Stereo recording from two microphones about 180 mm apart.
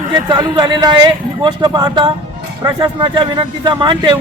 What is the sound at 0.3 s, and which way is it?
A man's voice, 25° right (ahead or behind).